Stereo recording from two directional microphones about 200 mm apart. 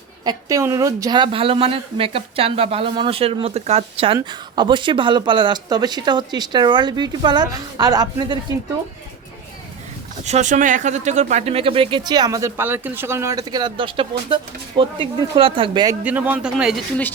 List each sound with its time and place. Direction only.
0.3 s a woman's voice: 15° right (ahead or behind)
10.2 s a woman's voice: 35° right (ahead or behind)
16.0 s speech: 10° right (ahead or behind)